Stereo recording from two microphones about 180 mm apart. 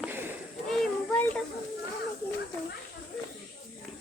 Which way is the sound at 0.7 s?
5° left (ahead or behind).